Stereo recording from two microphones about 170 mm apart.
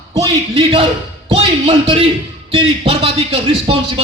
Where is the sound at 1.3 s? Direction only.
35° right (ahead or behind).